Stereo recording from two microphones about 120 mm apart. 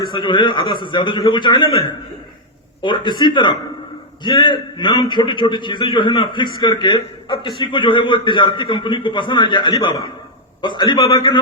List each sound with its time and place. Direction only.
0.0 s a man's voice: 40° left (ahead or behind)